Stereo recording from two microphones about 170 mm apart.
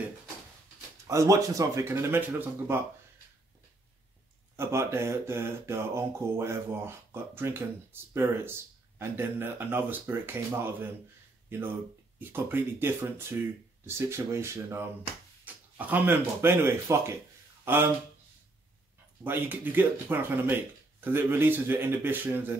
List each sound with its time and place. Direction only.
1.0 s speech: 20° right (ahead or behind)
4.6 s speech: 15° right (ahead or behind)
19.2 s speech: 10° right (ahead or behind)